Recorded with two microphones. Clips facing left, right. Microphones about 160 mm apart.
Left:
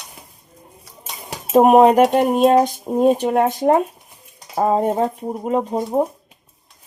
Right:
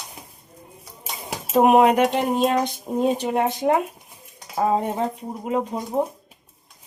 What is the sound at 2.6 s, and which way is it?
Speech, 50° left (ahead or behind).